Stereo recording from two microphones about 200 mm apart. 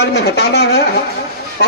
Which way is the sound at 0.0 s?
55° left (ahead or behind).